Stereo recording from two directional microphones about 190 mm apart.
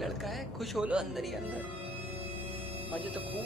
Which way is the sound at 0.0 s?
Centre (ahead or behind).